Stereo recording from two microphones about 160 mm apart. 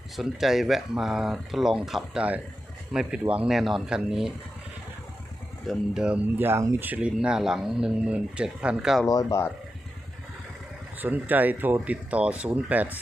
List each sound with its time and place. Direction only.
0.2 s speech: centre (ahead or behind)
5.6 s speech: centre (ahead or behind)
9.0 s speech: 20° left (ahead or behind)
10.9 s speech: 10° right (ahead or behind)